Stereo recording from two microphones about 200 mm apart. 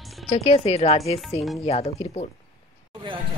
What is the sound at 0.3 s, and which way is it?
Speech, 30° left (ahead or behind).